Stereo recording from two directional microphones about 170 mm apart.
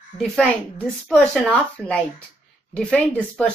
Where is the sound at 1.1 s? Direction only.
5° left (ahead or behind).